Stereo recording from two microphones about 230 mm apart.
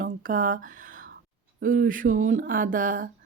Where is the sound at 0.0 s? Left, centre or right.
Right.